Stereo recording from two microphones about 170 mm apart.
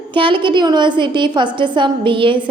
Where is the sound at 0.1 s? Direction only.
30° right (ahead or behind).